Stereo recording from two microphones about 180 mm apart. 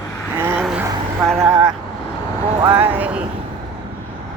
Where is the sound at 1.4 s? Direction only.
25° right (ahead or behind).